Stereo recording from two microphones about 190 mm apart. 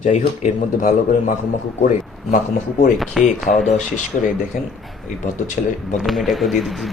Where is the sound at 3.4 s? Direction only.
Centre (ahead or behind).